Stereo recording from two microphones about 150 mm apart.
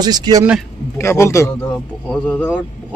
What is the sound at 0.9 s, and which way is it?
A man's voice, 20° left (ahead or behind).